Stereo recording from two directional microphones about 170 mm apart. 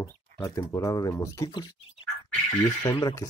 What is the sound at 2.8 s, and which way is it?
Speech, 25° left (ahead or behind).